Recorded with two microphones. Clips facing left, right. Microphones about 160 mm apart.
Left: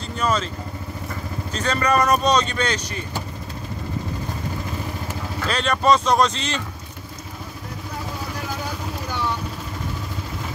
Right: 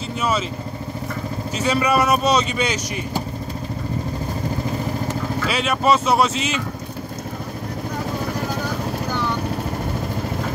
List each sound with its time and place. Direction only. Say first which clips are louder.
0.2 s speech: even; 5° right (ahead or behind)
1.5 s speech: right 2 dB; 10° right (ahead or behind)
5.5 s speech: left 1 dB; 5° right (ahead or behind)